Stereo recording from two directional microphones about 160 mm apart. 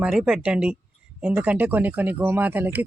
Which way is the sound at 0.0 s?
5° right (ahead or behind).